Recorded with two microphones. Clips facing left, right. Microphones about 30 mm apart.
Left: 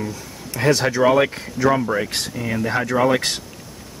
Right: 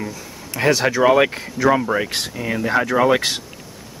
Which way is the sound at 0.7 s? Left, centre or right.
Centre.